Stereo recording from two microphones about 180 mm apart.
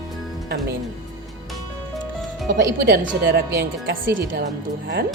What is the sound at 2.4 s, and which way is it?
Speech, 60° right (ahead or behind).